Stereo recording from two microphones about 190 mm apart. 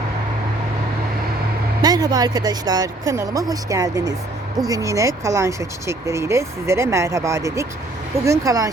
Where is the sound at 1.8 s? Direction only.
20° right (ahead or behind).